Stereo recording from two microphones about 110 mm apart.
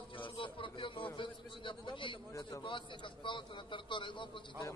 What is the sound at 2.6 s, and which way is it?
A man's voice, 50° left (ahead or behind).